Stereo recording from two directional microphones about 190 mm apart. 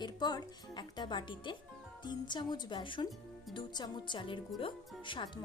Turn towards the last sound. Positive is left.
turn(degrees=25)  # may be behind; listen again after turning